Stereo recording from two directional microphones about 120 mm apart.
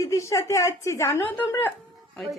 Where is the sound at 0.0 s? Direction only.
25° left (ahead or behind).